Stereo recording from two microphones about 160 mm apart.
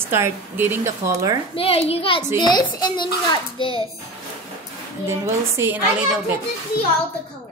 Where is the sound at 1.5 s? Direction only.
35° left (ahead or behind).